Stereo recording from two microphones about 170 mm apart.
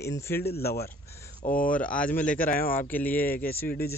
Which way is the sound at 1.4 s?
55° left (ahead or behind).